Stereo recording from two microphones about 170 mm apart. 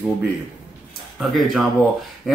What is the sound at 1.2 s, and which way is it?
Speech, centre (ahead or behind).